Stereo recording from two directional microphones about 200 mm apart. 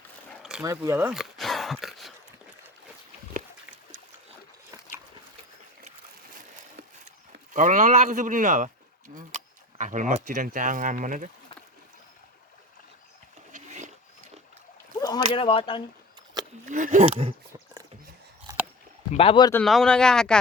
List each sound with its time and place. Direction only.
0.6 s speech: 15° right (ahead or behind)
1.1 s a sound: centre (ahead or behind)
7.5 s speech: 40° right (ahead or behind)
13.5 s roaring cats: 35° right (ahead or behind)
15.0 s speech: 25° left (ahead or behind)
16.6 s speech: 40° right (ahead or behind)
18.5 s a sound: 20° right (ahead or behind)
19.1 s speech: 25° left (ahead or behind)
19.6 s speech: centre (ahead or behind)